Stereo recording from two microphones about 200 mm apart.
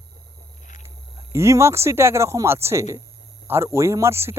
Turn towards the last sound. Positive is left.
turn(degrees=-15)  # may be behind; listen again after turning